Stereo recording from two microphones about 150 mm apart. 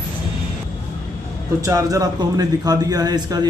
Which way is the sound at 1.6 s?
20° right (ahead or behind).